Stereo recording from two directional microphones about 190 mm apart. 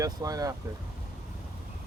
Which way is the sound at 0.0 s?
20° right (ahead or behind).